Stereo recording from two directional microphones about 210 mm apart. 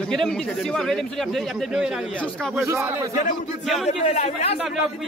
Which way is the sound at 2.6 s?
10° right (ahead or behind).